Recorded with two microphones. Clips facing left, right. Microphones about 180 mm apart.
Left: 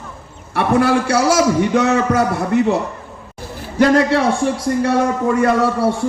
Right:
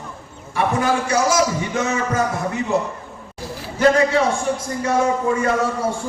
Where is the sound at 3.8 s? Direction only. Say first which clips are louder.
Left 3 dB; 70° left (ahead or behind).